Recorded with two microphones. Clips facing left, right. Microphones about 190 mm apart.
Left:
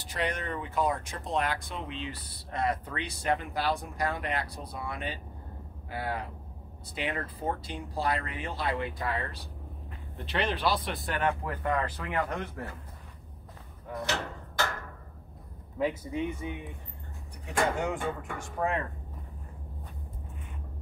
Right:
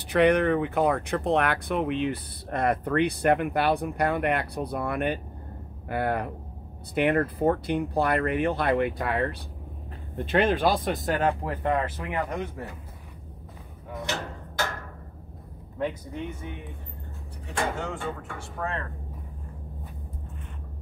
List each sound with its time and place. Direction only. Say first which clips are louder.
0.0 s speech: right 13 dB; 60° right (ahead or behind)
10.1 s speech: right 8 dB; 50° right (ahead or behind); by 12.7 s 10° right (ahead or behind)
13.8 s speech: even; centre (ahead or behind)
15.8 s speech: left 1 dB; 5° left (ahead or behind)
17.7 s speech: left 1 dB; 15° left (ahead or behind)